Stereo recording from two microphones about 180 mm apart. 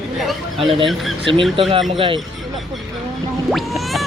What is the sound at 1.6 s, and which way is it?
Speech, 30° right (ahead or behind).